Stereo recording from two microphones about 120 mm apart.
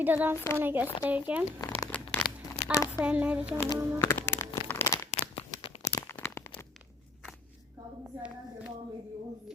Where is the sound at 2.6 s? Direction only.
70° left (ahead or behind).